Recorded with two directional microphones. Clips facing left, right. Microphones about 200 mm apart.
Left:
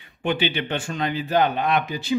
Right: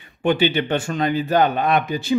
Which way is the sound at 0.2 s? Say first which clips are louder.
Right 5 dB; 45° right (ahead or behind).